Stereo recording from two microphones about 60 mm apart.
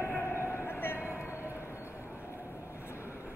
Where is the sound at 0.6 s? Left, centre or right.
Left.